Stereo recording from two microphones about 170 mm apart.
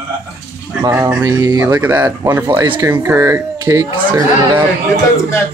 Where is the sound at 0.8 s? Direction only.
20° right (ahead or behind).